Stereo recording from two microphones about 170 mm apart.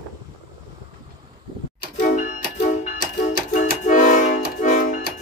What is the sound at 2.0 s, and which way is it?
Music, 50° left (ahead or behind).